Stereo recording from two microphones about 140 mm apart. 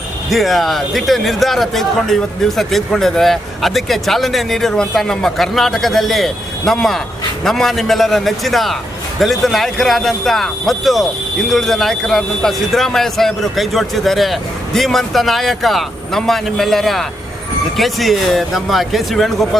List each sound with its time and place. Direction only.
0.3 s a man's voice: centre (ahead or behind)